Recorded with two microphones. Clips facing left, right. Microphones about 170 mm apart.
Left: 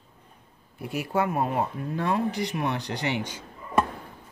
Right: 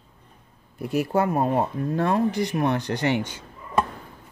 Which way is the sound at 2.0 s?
45° right (ahead or behind).